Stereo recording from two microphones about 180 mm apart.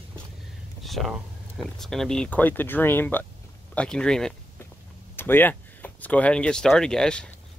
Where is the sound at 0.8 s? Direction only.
Centre (ahead or behind).